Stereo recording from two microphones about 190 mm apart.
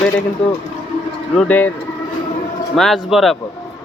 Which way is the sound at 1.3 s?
10° left (ahead or behind).